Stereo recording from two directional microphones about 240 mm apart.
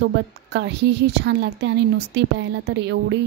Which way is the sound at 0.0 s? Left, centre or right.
Right.